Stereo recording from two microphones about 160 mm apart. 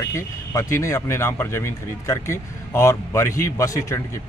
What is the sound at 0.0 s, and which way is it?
A man's voice, 20° left (ahead or behind).